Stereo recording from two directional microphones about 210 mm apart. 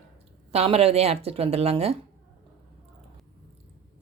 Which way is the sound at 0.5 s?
30° right (ahead or behind).